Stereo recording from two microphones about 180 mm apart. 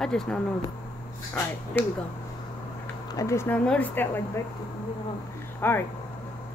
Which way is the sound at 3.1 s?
15° left (ahead or behind).